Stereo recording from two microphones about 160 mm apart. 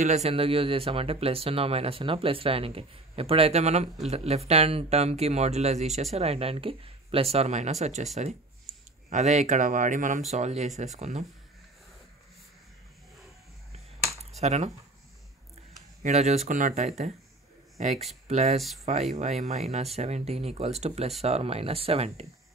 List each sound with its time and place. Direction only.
0.0 s speech: 45° right (ahead or behind)
14.4 s speech: 45° right (ahead or behind)
16.0 s speech: 45° right (ahead or behind)